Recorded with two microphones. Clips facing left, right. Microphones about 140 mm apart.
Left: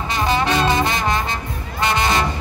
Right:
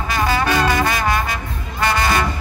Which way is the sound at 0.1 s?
25° left (ahead or behind).